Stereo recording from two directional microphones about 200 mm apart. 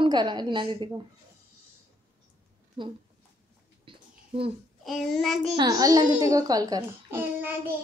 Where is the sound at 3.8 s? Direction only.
25° right (ahead or behind).